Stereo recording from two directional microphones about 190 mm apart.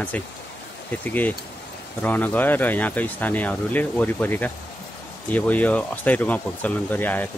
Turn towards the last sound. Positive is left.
turn(degrees=10)  # may be behind; listen again after turning